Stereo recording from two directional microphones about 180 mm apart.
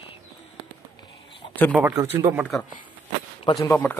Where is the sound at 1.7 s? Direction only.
10° right (ahead or behind).